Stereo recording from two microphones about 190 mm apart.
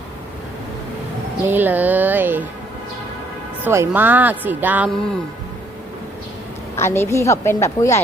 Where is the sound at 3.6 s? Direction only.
10° right (ahead or behind).